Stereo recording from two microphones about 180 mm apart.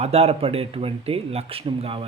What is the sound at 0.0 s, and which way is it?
A man's voice, 35° right (ahead or behind).